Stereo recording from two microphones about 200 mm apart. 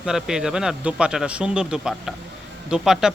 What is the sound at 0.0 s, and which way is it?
Speech, 5° right (ahead or behind).